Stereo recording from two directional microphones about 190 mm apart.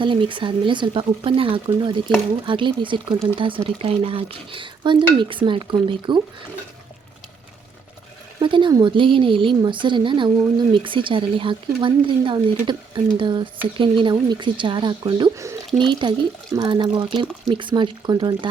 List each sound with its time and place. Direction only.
0.0 s speech: 25° right (ahead or behind)
8.4 s speech: 25° right (ahead or behind)